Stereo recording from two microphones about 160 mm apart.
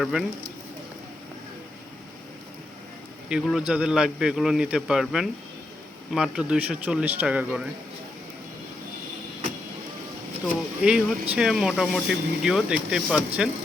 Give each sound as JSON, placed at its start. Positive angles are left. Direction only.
{"t": 0.0, "sound": "speech", "side_deg": 0}
{"t": 3.2, "sound": "speech", "side_deg": -5}
{"t": 10.4, "sound": "speech", "side_deg": -5}